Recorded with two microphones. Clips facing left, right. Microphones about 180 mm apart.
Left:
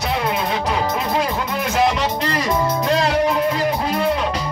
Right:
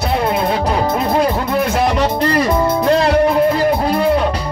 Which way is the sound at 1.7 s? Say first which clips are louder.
Right 3 dB; 60° right (ahead or behind).